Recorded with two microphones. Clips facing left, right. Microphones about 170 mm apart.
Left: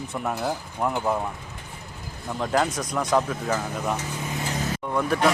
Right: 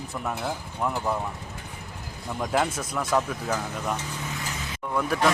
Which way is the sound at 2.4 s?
5° right (ahead or behind).